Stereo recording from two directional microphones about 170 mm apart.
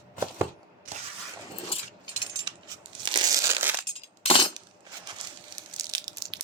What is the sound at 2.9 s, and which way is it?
Crumpling, 25° right (ahead or behind).